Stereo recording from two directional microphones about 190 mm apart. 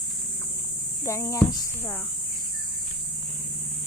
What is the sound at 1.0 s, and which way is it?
Speech, 15° left (ahead or behind).